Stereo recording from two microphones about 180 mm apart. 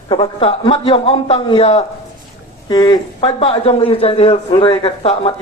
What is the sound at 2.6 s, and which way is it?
Speech, 25° left (ahead or behind).